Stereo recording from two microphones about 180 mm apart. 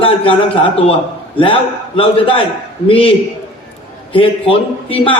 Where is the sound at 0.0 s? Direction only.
30° left (ahead or behind).